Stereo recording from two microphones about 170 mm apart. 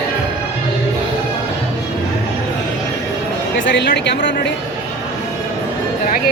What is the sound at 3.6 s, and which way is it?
Speech, 90° left.